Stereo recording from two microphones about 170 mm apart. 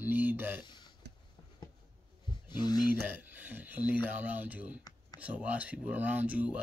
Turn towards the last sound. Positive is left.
turn(degrees=-10)  # may be behind; listen again after turning